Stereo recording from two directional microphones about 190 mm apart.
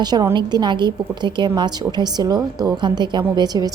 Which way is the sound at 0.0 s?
20° right (ahead or behind).